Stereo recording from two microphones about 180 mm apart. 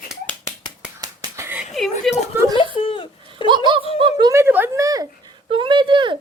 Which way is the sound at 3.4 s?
25° right (ahead or behind).